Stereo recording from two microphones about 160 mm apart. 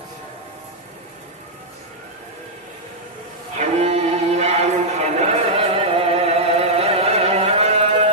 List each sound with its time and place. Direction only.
3.5 s music: 45° right (ahead or behind)